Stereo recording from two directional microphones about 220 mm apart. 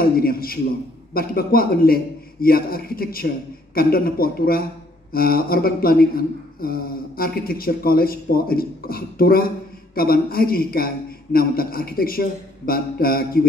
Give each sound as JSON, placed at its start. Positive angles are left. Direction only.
{"t": 0.0, "sound": "a man's voice", "side_deg": 40}